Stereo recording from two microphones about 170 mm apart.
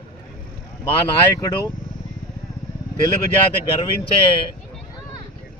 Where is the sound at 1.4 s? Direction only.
20° left (ahead or behind).